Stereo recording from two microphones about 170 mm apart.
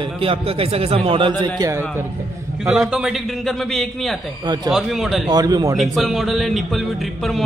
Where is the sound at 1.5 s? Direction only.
20° right (ahead or behind).